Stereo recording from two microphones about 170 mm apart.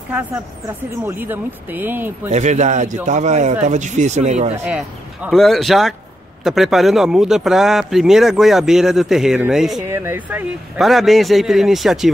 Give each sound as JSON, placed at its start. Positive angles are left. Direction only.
{"t": 1.0, "sound": "speech", "side_deg": -10}
{"t": 2.2, "sound": "speech", "side_deg": -45}
{"t": 4.6, "sound": "speech", "side_deg": -5}
{"t": 9.8, "sound": "speech", "side_deg": -15}
{"t": 10.8, "sound": "speech", "side_deg": 0}